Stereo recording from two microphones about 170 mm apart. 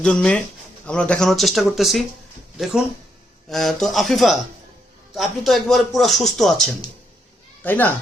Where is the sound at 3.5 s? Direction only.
Centre (ahead or behind).